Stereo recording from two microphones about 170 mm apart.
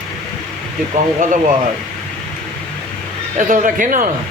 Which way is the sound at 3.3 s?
50° right (ahead or behind).